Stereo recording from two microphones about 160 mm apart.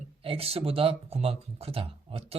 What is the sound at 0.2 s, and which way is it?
Speech, 35° right (ahead or behind).